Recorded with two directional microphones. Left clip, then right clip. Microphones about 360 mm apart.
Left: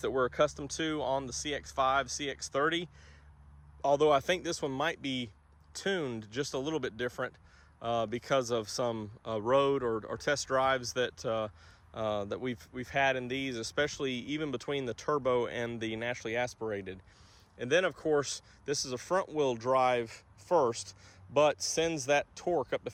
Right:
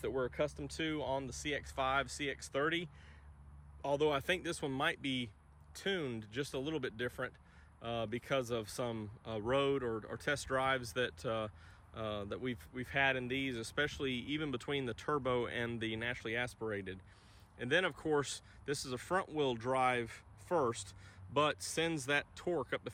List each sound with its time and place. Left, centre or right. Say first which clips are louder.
0.0 s speech: left 8 dB; centre